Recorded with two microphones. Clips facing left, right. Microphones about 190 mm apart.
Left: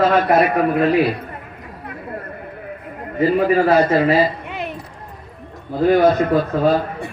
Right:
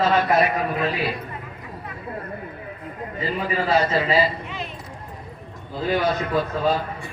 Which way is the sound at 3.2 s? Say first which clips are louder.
Left 11 dB; 60° left (ahead or behind).